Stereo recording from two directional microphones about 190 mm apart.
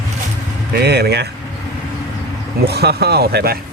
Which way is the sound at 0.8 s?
60° right (ahead or behind).